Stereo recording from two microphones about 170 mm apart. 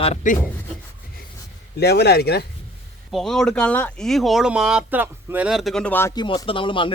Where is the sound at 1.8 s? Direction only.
70° left (ahead or behind).